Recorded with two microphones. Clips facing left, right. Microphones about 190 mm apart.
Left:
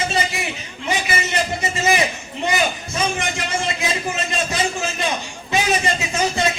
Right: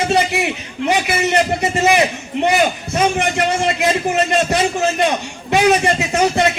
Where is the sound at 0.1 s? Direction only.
65° right (ahead or behind).